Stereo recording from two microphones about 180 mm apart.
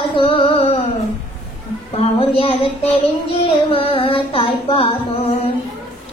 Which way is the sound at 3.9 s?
30° left (ahead or behind).